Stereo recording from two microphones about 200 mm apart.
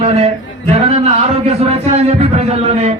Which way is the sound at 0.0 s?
30° right (ahead or behind).